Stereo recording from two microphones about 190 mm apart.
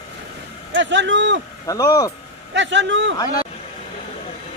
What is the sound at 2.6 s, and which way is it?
Speech, 75° right (ahead or behind).